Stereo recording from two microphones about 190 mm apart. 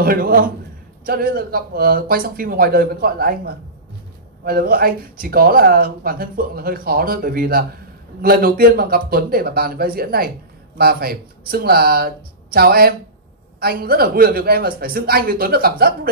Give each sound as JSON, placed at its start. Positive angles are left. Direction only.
{"t": 0.0, "sound": "speech", "side_deg": -50}